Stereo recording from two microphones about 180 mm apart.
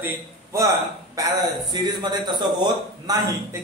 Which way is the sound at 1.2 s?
20° right (ahead or behind).